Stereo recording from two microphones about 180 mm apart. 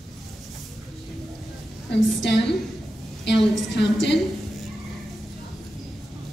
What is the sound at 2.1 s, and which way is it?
A woman's voice, 75° left (ahead or behind).